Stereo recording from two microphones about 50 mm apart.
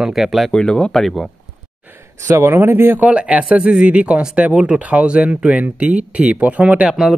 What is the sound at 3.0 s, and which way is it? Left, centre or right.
Speech, right.